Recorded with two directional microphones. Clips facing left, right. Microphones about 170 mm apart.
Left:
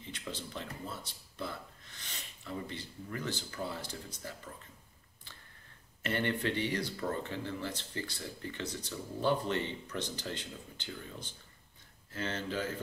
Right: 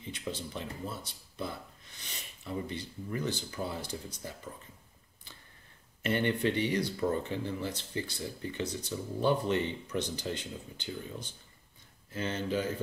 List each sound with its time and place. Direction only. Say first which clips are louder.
0.1 s speech: right 4 dB; 15° right (ahead or behind)
2.0 s speech: right 1 dB; 15° right (ahead or behind)
6.0 s speech: right 4 dB; 15° right (ahead or behind)